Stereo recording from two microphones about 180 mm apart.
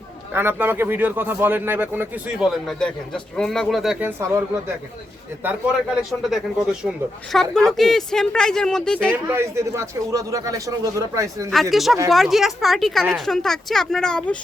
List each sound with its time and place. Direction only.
0.3 s speech: 10° right (ahead or behind)
4.0 s speech: 15° right (ahead or behind)
7.5 s speech: centre (ahead or behind)
9.1 s speech: 15° right (ahead or behind)
11.5 s speech: centre (ahead or behind)